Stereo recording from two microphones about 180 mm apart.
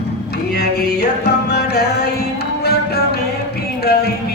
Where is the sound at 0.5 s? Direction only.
60° left (ahead or behind).